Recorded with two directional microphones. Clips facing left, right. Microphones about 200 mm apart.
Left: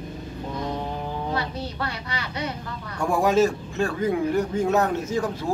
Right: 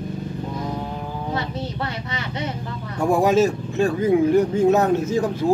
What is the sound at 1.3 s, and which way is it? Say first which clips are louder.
Speech: right 2 dB; 20° right (ahead or behind).